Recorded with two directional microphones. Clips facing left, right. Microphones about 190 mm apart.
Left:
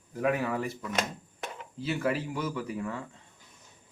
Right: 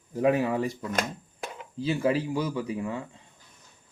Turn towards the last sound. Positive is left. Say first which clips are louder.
# right 3 dB
turn(degrees=-15)  # may be behind; listen again after turning